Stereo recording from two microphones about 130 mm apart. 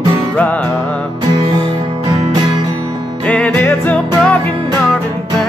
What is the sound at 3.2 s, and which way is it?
Music, 10° left (ahead or behind).